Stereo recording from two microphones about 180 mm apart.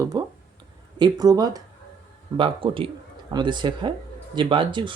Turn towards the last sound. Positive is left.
turn(degrees=-25)  # may be behind; listen again after turning